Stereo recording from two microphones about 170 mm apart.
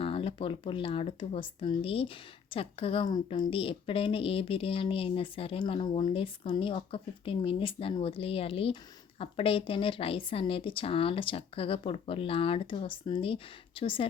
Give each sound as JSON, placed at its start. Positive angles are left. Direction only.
{"t": 0.0, "sound": "speech", "side_deg": 30}